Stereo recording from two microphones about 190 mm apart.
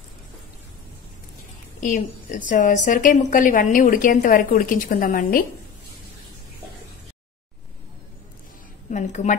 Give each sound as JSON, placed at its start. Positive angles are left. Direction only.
{"t": 1.8, "sound": "a woman's voice", "side_deg": 40}
{"t": 8.9, "sound": "a woman's voice", "side_deg": 40}